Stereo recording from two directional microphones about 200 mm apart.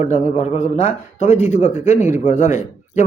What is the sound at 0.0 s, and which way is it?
A man's voice, 35° left (ahead or behind).